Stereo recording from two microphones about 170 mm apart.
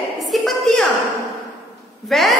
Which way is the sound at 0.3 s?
Centre (ahead or behind).